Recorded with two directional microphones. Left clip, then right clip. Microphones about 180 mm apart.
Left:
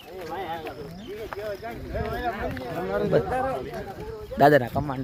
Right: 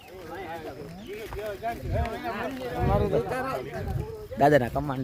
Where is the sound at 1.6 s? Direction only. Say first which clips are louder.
Right 2 dB; 55° right (ahead or behind).